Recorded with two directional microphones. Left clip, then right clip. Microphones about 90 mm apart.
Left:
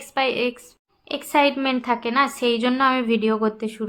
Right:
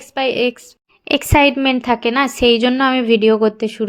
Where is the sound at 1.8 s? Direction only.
65° right (ahead or behind).